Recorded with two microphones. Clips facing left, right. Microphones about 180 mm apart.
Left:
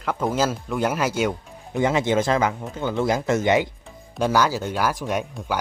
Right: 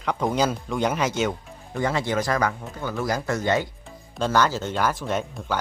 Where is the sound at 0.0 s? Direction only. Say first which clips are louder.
Even; 5° left (ahead or behind).